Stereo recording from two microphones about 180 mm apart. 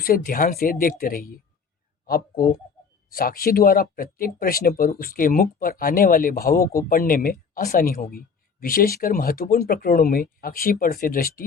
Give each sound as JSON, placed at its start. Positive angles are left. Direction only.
{"t": 0.0, "sound": "speech", "side_deg": 55}